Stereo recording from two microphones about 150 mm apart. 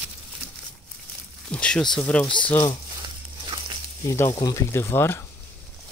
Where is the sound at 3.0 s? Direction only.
35° right (ahead or behind).